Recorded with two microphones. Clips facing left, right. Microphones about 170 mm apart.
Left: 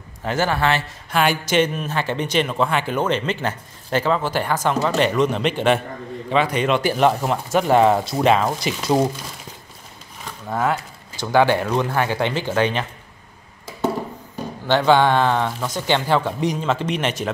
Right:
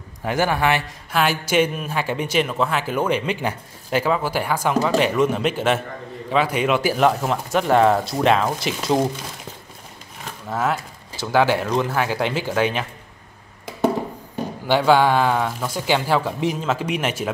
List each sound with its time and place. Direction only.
0.2 s speech: 15° right (ahead or behind)
1.1 s speech: centre (ahead or behind)
10.5 s speech: 5° right (ahead or behind)
14.7 s speech: 10° right (ahead or behind)